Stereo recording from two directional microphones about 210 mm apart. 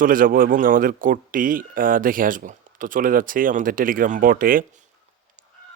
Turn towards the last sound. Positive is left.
turn(degrees=-40)  # may be behind; listen again after turning